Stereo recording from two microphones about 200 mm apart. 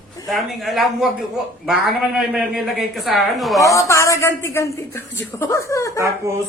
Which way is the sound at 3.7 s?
15° left (ahead or behind).